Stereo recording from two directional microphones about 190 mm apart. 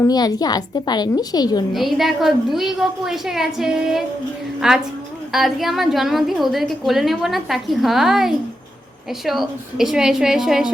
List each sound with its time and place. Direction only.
0.0 s a woman's voice: 20° left (ahead or behind)
1.7 s a woman's voice: centre (ahead or behind)